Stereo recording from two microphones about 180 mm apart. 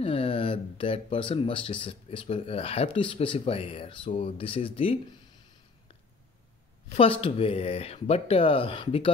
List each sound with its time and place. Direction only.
0.0 s speech: 30° left (ahead or behind)
7.0 s speech: 30° left (ahead or behind)